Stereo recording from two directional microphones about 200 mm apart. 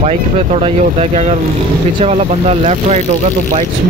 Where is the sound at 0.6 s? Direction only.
30° right (ahead or behind).